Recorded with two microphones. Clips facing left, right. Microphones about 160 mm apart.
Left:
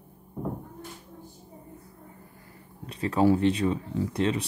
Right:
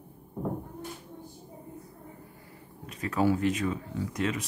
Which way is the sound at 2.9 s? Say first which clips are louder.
Left 4 dB; 30° left (ahead or behind).